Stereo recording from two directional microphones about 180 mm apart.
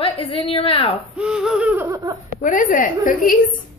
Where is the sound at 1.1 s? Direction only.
5° right (ahead or behind).